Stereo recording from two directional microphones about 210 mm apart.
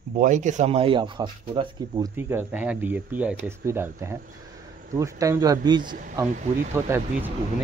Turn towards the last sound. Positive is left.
turn(degrees=-10)  # may be behind; listen again after turning